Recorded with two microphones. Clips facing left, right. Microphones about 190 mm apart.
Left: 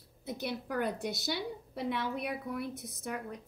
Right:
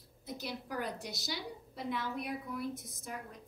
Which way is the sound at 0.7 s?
55° left (ahead or behind).